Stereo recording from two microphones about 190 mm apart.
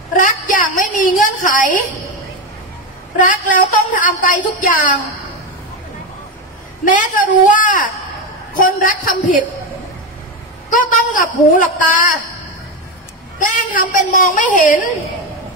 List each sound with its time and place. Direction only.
0.1 s a woman's voice: 45° left (ahead or behind)
3.2 s a woman's voice: 45° left (ahead or behind)
6.8 s a woman's voice: 45° left (ahead or behind)
10.7 s a woman's voice: 45° left (ahead or behind)
13.4 s a woman's voice: 45° left (ahead or behind)